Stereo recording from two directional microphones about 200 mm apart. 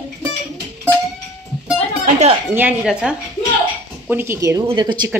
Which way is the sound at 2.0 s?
35° right (ahead or behind).